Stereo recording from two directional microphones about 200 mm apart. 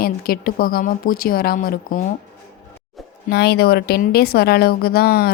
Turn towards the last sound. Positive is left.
turn(degrees=50)  # may be behind; listen again after turning